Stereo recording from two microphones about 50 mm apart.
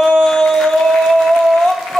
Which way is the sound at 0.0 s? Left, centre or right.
Centre.